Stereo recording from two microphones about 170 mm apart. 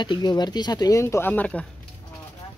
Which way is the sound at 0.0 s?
25° left (ahead or behind).